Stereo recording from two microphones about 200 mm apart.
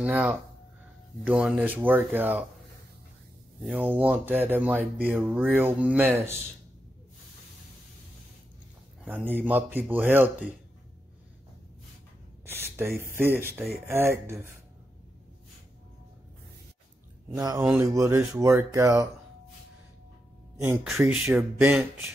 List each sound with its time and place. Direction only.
0.0 s speech: 10° right (ahead or behind)
3.6 s speech: 10° right (ahead or behind)
9.0 s speech: 10° right (ahead or behind)
12.4 s speech: 10° right (ahead or behind)
17.4 s speech: 20° right (ahead or behind)
20.5 s speech: 10° right (ahead or behind)